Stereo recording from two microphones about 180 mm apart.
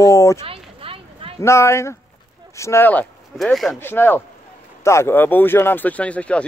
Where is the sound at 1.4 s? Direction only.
15° left (ahead or behind).